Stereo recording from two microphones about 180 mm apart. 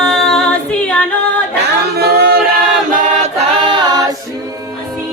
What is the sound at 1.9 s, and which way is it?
A capella, 60° right (ahead or behind).